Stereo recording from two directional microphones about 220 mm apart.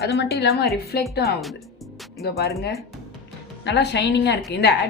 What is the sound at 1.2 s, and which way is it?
Speech, centre (ahead or behind).